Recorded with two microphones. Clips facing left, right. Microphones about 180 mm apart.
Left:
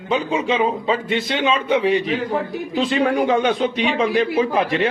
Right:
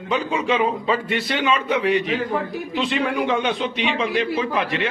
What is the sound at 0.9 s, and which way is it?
A man's voice, 20° left (ahead or behind).